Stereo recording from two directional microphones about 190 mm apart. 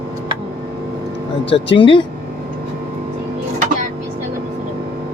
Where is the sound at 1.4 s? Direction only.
70° left (ahead or behind).